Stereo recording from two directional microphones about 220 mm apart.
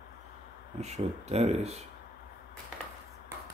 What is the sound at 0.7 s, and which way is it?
Speech, 30° right (ahead or behind).